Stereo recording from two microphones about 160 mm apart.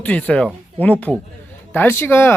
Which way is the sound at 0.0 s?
10° left (ahead or behind).